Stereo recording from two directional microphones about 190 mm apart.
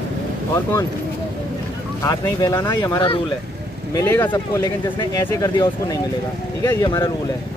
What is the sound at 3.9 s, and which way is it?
Speech, 10° left (ahead or behind).